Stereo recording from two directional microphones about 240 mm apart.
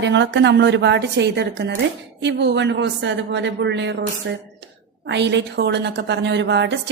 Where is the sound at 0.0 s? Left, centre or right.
Right.